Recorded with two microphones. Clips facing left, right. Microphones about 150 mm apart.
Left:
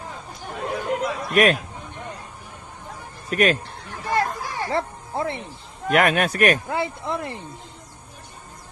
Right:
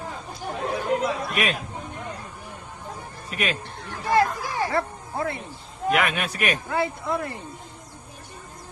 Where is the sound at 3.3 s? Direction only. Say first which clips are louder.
Left 8 dB; 50° left (ahead or behind).